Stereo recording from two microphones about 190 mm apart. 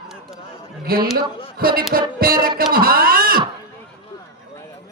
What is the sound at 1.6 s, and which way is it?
Speech, 50° right (ahead or behind).